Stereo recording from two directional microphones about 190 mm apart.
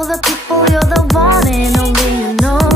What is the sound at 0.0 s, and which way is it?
Music, centre (ahead or behind).